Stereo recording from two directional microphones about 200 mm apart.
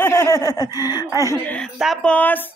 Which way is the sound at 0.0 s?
15° left (ahead or behind).